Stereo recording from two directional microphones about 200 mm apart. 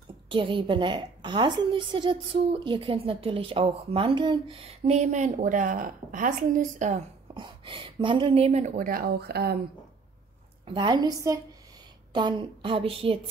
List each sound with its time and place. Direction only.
0.3 s a woman's voice: 25° right (ahead or behind)
7.3 s speech: 25° right (ahead or behind); by 9.6 s 50° right (ahead or behind)
10.6 s a woman's voice: 25° right (ahead or behind)